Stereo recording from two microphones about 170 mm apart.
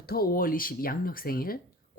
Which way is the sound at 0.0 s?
60° left (ahead or behind).